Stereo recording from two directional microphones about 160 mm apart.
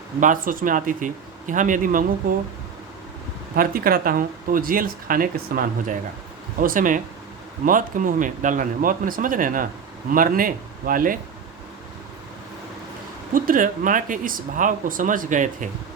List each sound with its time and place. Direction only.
0.2 s speech: 55° right (ahead or behind)
3.5 s speech: 65° right (ahead or behind)
13.3 s speech: 60° right (ahead or behind)